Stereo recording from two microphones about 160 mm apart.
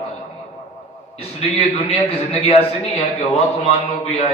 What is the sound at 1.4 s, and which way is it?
A man's voice, 35° left (ahead or behind).